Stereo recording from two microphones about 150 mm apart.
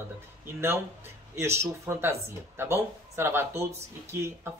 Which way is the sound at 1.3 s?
20° right (ahead or behind).